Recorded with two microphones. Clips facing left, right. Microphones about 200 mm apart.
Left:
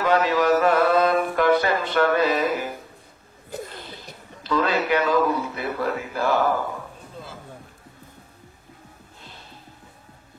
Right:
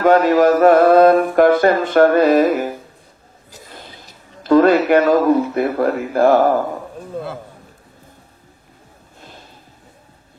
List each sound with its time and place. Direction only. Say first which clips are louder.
0.0 s speech: right 8 dB; 45° right (ahead or behind)
3.4 s cough: left 10 dB; 55° left (ahead or behind)
3.9 s a sound: left 2 dB; 55° left (ahead or behind)
4.4 s speech: right 11 dB; 50° right (ahead or behind)